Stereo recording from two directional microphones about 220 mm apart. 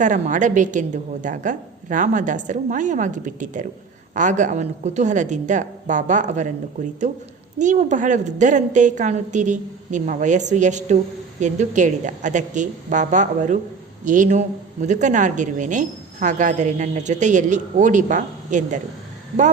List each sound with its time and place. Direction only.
0.0 s a woman's voice: 35° right (ahead or behind)
7.6 s a woman's voice: 35° right (ahead or behind)